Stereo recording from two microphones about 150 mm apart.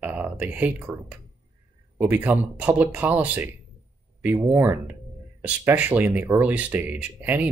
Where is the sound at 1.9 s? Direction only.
10° right (ahead or behind).